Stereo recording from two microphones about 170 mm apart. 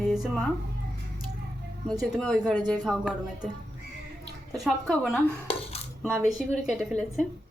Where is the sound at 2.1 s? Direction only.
Centre (ahead or behind).